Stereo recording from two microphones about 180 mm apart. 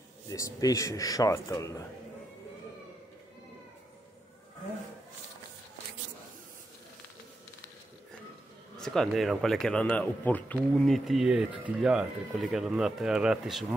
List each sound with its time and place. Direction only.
0.3 s a man's voice: 20° left (ahead or behind)
8.7 s speech: 5° left (ahead or behind)